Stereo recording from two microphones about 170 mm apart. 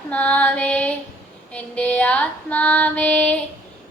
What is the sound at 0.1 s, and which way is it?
Female singing, 10° left (ahead or behind).